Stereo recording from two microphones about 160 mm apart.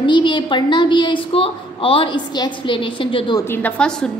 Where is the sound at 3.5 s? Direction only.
10° left (ahead or behind).